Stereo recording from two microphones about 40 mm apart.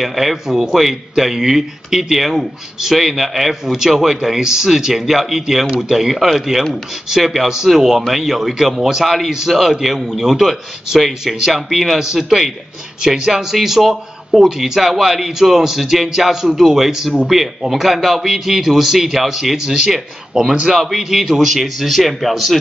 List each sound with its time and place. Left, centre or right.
0.0 s a man's voice: centre